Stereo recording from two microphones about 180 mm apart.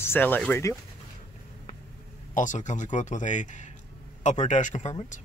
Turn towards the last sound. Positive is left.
turn(degrees=40)  # may be behind; listen again after turning